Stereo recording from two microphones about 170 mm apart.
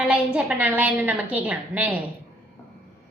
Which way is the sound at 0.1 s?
5° right (ahead or behind).